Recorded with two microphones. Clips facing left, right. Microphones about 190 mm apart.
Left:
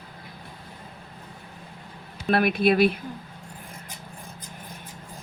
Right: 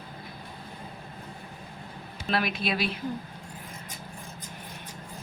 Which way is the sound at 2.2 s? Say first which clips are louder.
Left 8 dB; 55° left (ahead or behind).